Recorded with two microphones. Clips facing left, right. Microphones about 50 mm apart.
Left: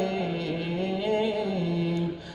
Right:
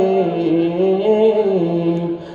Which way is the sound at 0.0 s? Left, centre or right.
Right.